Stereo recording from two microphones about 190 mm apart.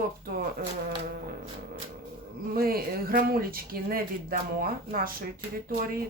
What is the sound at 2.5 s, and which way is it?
Speech, 50° right (ahead or behind).